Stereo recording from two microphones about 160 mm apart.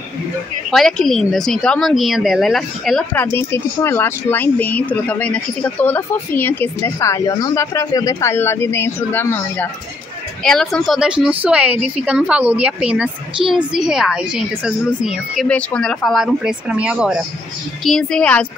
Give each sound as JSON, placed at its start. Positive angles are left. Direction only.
{"t": 0.7, "sound": "a woman's voice", "side_deg": 0}
{"t": 3.2, "sound": "speech", "side_deg": 15}
{"t": 10.4, "sound": "a woman's voice", "side_deg": 0}
{"t": 17.8, "sound": "speech", "side_deg": 5}